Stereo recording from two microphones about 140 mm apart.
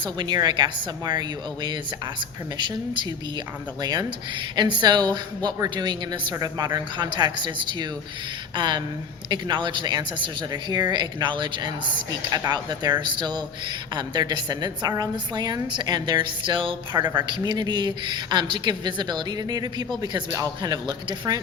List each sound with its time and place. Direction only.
0.0 s speech: 30° right (ahead or behind)
2.6 s speech: 35° right (ahead or behind)